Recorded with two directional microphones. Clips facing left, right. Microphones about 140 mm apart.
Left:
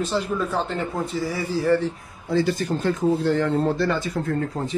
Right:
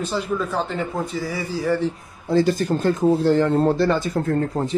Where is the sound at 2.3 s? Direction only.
40° right (ahead or behind).